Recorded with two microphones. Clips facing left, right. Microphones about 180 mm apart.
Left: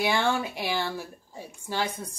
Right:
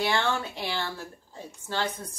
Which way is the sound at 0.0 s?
10° left (ahead or behind).